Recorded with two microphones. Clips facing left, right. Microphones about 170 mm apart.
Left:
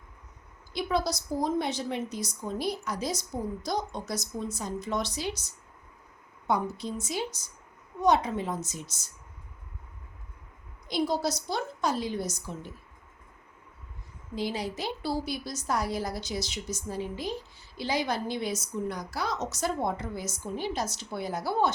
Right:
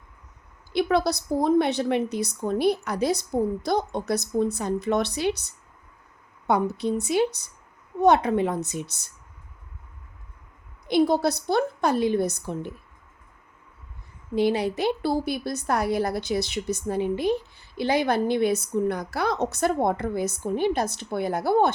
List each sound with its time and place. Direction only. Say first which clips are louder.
0.7 s a woman's voice: right 7 dB; 60° right (ahead or behind)
10.8 s a woman's voice: right 7 dB; 60° right (ahead or behind)
14.3 s a woman's voice: right 9 dB; 60° right (ahead or behind)